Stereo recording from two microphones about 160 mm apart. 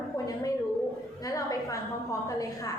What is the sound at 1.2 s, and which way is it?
Speech, 20° left (ahead or behind).